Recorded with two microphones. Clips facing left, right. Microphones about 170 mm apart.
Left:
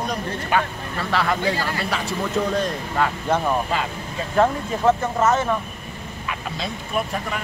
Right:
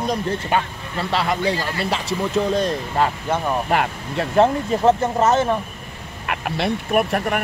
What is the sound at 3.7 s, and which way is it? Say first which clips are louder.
Speech: right 5 dB; 65° right (ahead or behind).